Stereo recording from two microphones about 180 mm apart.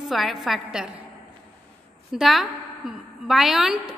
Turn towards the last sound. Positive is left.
turn(degrees=0)  # may be behind; listen again after turning